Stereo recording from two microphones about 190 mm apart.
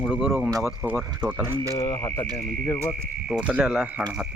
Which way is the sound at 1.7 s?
15° left (ahead or behind).